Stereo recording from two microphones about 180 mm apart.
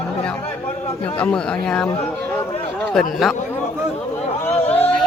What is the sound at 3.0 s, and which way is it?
Speech, centre (ahead or behind).